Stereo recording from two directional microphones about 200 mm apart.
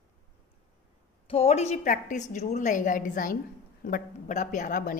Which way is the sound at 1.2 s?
30° left (ahead or behind).